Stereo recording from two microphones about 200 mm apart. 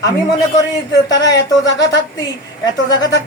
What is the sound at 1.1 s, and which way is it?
Speech, 60° left (ahead or behind).